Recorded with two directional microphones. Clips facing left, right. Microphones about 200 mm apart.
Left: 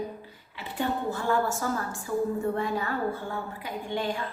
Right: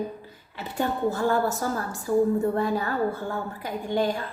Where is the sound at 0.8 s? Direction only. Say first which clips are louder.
Right 4 dB; 40° right (ahead or behind).